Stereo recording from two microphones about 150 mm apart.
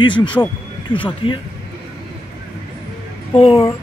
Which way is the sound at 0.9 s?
35° left (ahead or behind).